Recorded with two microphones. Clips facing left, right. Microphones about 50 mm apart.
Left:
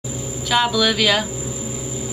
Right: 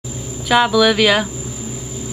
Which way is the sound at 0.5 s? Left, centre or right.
Centre.